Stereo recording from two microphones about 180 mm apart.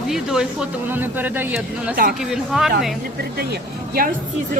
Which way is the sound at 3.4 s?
60° right (ahead or behind).